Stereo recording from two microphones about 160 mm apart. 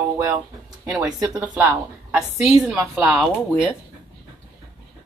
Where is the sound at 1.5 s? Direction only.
20° right (ahead or behind).